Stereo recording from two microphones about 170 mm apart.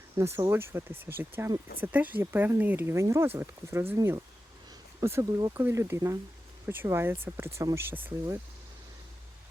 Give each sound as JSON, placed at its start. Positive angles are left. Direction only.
{"t": 0.2, "sound": "speech", "side_deg": -15}